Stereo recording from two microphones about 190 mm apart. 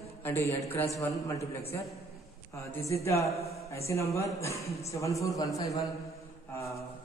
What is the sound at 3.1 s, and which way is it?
Speech, 35° left (ahead or behind).